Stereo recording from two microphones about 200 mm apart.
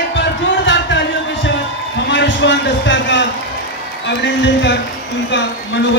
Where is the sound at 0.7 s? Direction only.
65° left (ahead or behind).